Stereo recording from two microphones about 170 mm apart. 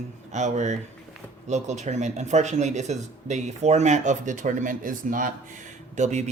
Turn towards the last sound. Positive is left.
turn(degrees=-45)  # may be behind; listen again after turning